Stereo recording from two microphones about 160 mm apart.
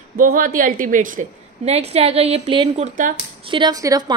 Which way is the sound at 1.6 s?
40° right (ahead or behind).